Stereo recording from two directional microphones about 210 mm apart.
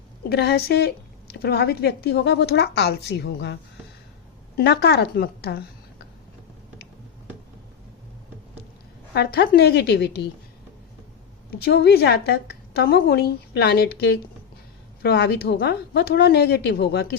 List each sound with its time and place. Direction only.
0.3 s a woman's voice: 50° left (ahead or behind)
9.1 s a woman's voice: 50° left (ahead or behind)
11.5 s a woman's voice: 50° left (ahead or behind)